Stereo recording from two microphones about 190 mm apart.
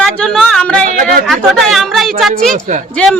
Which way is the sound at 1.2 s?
Centre (ahead or behind).